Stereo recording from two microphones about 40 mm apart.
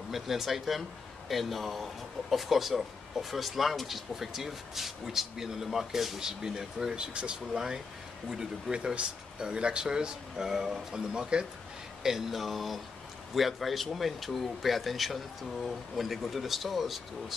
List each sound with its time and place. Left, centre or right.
0.1 s speech: centre
7.0 s speech: right
12.0 s speech: centre